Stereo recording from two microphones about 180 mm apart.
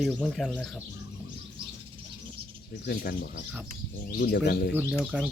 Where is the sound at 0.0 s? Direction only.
5° left (ahead or behind).